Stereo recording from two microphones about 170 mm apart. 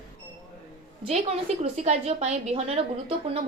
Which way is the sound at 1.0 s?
35° right (ahead or behind).